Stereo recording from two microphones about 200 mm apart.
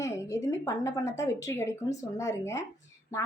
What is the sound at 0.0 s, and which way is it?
A woman's voice, 15° left (ahead or behind).